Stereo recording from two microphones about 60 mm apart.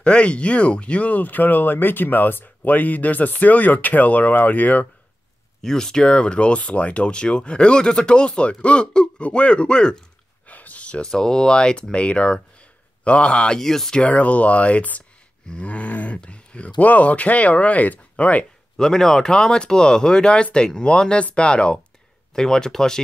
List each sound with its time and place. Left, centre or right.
0.0 s speech: centre
5.6 s speech: centre
10.4 s a sound: left
11.1 s speech: centre
14.0 s speech: left
18.8 s speech: centre